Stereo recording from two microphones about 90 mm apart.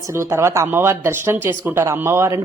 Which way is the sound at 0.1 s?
30° right (ahead or behind).